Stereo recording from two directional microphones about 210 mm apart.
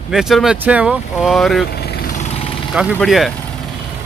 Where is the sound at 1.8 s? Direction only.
45° left (ahead or behind).